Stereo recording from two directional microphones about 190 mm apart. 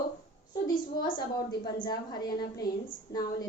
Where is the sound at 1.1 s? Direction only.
25° left (ahead or behind).